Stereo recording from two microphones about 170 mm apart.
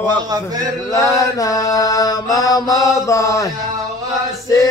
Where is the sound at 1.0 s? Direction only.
20° left (ahead or behind).